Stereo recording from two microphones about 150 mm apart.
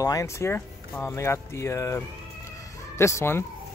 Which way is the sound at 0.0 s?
20° left (ahead or behind).